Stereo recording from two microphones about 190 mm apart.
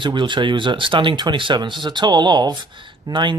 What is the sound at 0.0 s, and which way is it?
Speech, 25° right (ahead or behind).